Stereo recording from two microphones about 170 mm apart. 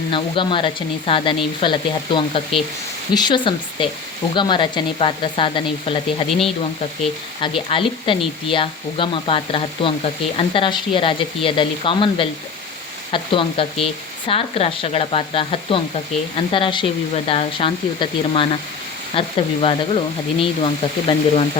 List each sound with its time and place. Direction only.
0.1 s speech: 30° left (ahead or behind)
7.4 s speech: 30° left (ahead or behind)